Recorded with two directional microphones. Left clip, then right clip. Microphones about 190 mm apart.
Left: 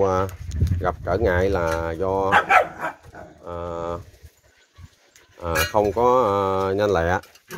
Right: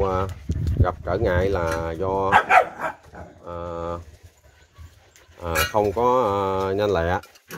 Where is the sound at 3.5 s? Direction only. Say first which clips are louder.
Left 1 dB; 25° left (ahead or behind).